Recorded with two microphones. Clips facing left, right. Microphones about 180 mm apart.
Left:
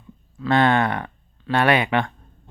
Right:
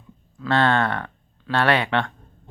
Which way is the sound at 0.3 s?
15° left (ahead or behind).